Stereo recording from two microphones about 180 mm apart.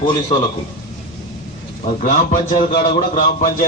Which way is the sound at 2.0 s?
45° left (ahead or behind).